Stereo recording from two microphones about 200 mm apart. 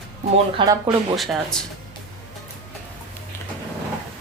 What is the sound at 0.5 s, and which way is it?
Speech, 20° right (ahead or behind).